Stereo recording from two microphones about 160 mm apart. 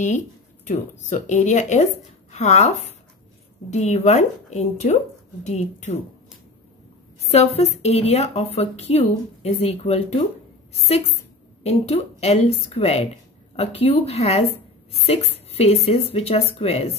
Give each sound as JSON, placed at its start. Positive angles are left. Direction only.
{"t": 0.7, "sound": "a woman's voice", "side_deg": 45}
{"t": 7.2, "sound": "a woman's voice", "side_deg": 40}